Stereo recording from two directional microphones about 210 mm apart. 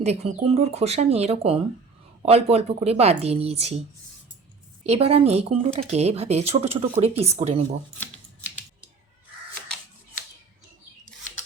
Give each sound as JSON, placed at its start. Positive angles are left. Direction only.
{"t": 0.0, "sound": "speech", "side_deg": -30}